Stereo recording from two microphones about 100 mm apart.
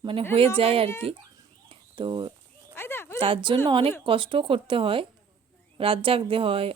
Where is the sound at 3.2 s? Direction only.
55° right (ahead or behind).